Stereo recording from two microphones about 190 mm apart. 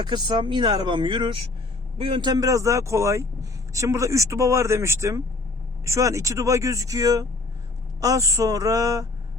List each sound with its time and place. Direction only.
0.0 s speech: 25° right (ahead or behind)